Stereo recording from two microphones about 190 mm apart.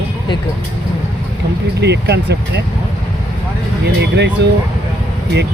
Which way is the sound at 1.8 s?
65° right (ahead or behind).